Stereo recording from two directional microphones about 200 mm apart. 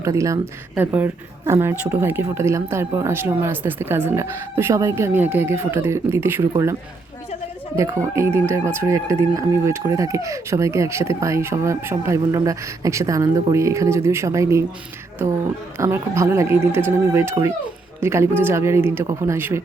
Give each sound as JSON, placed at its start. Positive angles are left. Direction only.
{"t": 0.0, "sound": "speech", "side_deg": -15}
{"t": 7.8, "sound": "speech", "side_deg": -15}
{"t": 15.8, "sound": "speech", "side_deg": -15}